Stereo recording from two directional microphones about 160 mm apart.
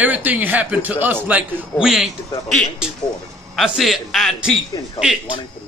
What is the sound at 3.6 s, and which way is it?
Speech, centre (ahead or behind).